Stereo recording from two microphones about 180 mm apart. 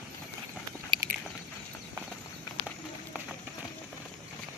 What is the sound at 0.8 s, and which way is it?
Biting, 25° right (ahead or behind).